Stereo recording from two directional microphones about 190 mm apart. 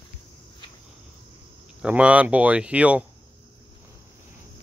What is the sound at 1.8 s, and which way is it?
Speech, 5° right (ahead or behind).